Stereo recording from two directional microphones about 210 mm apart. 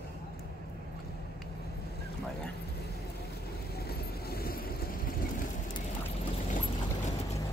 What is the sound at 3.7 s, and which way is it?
Vehicle, 50° left (ahead or behind).